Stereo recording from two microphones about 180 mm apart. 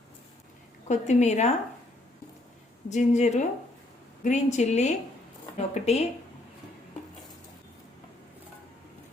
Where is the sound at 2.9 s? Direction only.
40° left (ahead or behind).